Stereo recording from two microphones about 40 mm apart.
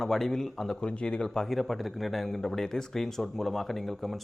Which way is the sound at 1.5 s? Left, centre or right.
Centre.